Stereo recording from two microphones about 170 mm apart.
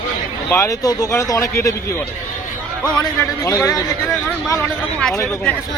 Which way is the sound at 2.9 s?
15° left (ahead or behind).